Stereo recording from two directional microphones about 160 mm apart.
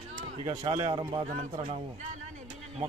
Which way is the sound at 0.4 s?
30° right (ahead or behind).